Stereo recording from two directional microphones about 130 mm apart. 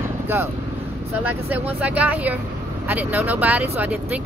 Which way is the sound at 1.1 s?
15° right (ahead or behind).